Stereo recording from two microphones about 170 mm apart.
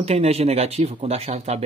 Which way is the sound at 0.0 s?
35° right (ahead or behind).